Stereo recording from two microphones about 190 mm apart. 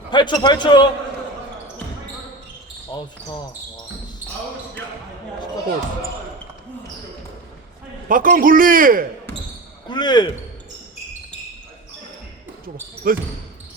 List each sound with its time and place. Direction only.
0.1 s a man's voice: 25° left (ahead or behind)
2.9 s speech: 25° left (ahead or behind)
8.0 s a man's voice: 45° right (ahead or behind)
9.9 s a man's voice: 20° left (ahead or behind)
13.0 s a man's voice: 50° right (ahead or behind)